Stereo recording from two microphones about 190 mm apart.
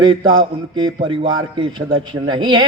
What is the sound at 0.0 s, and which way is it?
A man's voice, 25° right (ahead or behind).